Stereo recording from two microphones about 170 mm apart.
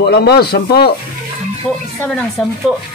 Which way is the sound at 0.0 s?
75° left (ahead or behind).